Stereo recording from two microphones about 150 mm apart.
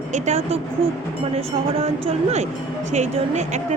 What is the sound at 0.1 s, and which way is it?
Speech, 45° right (ahead or behind).